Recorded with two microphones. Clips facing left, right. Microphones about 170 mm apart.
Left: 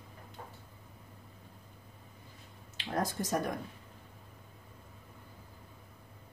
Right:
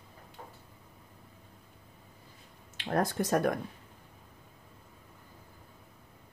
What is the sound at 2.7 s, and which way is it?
Speech, 55° right (ahead or behind).